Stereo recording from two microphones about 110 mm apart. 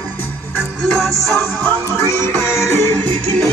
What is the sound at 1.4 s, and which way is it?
Music, 20° left (ahead or behind).